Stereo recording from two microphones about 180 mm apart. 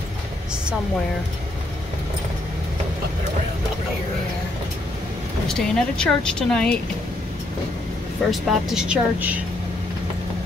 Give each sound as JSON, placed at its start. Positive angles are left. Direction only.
{"t": 5.5, "sound": "speech", "side_deg": 5}
{"t": 8.3, "sound": "speech", "side_deg": 0}